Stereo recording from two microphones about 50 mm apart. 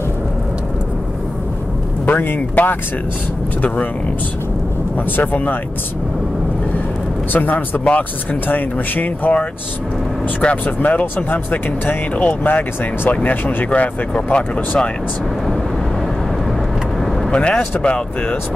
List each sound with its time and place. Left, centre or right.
2.0 s speech: left
4.9 s speech: left
7.3 s speech: left
13.7 s speech: left
17.3 s speech: left